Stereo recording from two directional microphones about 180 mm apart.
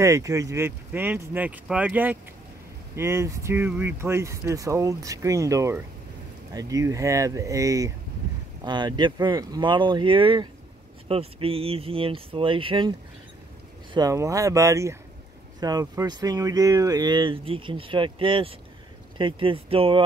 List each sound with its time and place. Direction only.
0.0 s speech: 15° right (ahead or behind)
13.9 s speech: 20° right (ahead or behind)